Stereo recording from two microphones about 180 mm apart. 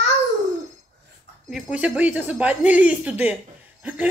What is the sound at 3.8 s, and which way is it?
Laughter, 10° right (ahead or behind).